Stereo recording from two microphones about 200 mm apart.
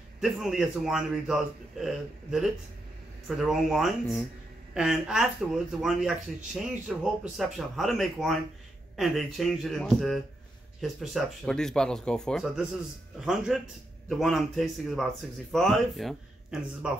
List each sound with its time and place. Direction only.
0.2 s speech: centre (ahead or behind)
3.3 s speech: centre (ahead or behind)